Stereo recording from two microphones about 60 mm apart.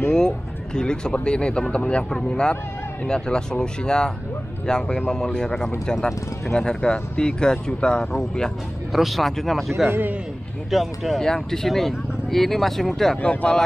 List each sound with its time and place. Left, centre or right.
0.7 s speech: centre
8.9 s speech: centre
9.8 s a man's voice: right
10.7 s speech: centre
13.2 s speech: left